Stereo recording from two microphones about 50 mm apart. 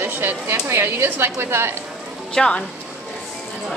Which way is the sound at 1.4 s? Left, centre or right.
Right.